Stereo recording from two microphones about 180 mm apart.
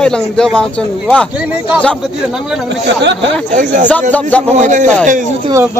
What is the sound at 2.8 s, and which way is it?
Speech, 75° right (ahead or behind).